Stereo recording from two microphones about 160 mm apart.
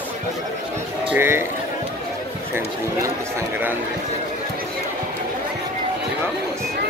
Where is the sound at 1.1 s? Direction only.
15° right (ahead or behind).